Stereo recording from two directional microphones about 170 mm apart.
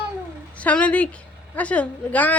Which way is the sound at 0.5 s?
10° left (ahead or behind).